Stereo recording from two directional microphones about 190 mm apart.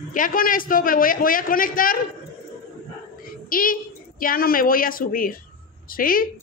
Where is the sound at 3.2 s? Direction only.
50° left (ahead or behind).